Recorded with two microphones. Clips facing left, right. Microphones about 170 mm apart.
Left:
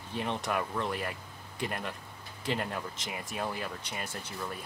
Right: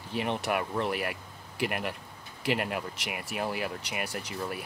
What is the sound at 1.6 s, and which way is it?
Speech, 70° right (ahead or behind).